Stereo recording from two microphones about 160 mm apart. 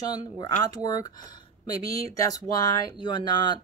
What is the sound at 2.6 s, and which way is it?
Speech, 30° left (ahead or behind).